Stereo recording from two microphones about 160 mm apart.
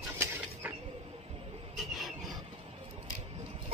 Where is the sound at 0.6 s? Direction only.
10° right (ahead or behind).